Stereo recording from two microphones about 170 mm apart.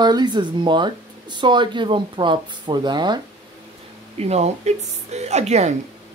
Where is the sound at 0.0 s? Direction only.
25° right (ahead or behind).